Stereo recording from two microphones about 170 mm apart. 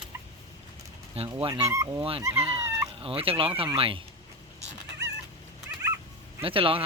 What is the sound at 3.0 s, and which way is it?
Speech, 35° right (ahead or behind).